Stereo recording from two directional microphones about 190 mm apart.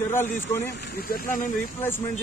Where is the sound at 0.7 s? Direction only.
60° left (ahead or behind).